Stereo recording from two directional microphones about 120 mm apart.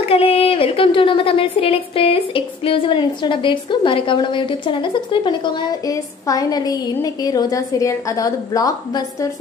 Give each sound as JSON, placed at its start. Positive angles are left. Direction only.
{"t": 0.1, "sound": "speech", "side_deg": 55}